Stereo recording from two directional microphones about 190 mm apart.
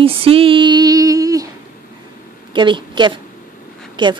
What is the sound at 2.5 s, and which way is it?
A woman's voice, 25° right (ahead or behind).